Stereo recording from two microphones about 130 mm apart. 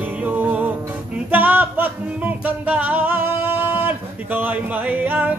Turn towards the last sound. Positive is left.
turn(degrees=-15)  # may be behind; listen again after turning